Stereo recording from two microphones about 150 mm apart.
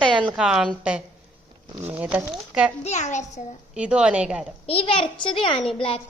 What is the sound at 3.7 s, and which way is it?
Speech, 5° right (ahead or behind).